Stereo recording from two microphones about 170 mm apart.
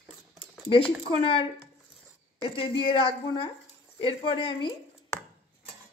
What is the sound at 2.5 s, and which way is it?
A woman's voice, 30° left (ahead or behind).